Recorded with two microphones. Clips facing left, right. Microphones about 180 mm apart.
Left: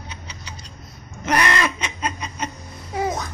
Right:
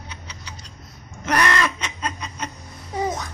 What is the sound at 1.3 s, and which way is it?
Snicker, 15° left (ahead or behind).